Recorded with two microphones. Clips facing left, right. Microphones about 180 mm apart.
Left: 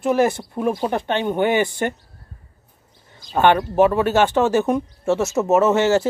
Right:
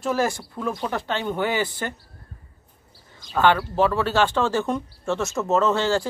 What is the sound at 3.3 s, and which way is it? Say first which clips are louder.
Speech: left 4 dB; 20° left (ahead or behind).